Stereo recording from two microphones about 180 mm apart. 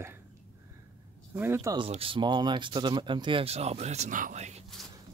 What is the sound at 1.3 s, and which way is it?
Speech, 15° right (ahead or behind).